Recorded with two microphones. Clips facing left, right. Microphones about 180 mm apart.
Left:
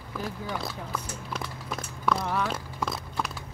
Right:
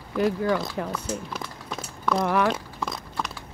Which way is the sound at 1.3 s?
5° left (ahead or behind).